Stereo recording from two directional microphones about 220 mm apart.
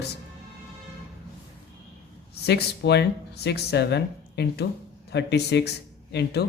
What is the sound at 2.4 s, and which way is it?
Speech, 50° left (ahead or behind).